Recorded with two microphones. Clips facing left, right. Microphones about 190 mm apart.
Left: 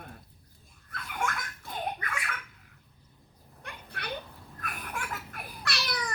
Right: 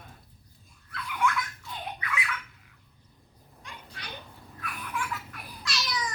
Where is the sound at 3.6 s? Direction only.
60° left (ahead or behind).